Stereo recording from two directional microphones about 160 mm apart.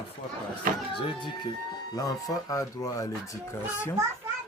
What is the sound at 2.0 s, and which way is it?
Speech, 20° left (ahead or behind).